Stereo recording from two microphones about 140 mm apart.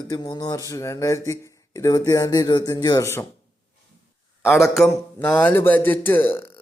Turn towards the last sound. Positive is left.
turn(degrees=15)  # may be behind; listen again after turning